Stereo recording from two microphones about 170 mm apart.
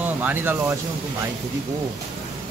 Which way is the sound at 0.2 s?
10° right (ahead or behind).